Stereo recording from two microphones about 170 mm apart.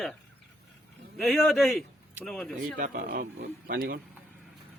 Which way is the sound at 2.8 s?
55° right (ahead or behind).